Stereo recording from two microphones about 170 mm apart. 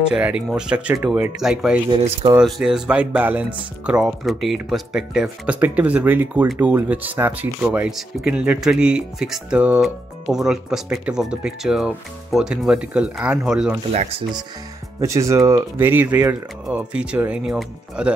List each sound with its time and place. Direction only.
0.1 s speech: 5° right (ahead or behind)
1.9 s speech: 30° right (ahead or behind)
2.3 s speech: 5° right (ahead or behind)
15.0 s speech: 20° right (ahead or behind)